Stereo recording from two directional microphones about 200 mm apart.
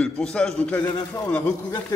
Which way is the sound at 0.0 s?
5° left (ahead or behind).